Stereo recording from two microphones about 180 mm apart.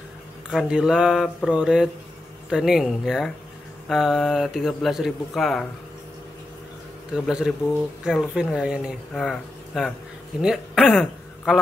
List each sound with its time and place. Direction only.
0.5 s speech: 5° right (ahead or behind)
7.1 s speech: 5° right (ahead or behind)